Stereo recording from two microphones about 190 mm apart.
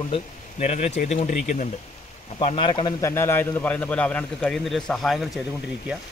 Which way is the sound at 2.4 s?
30° left (ahead or behind).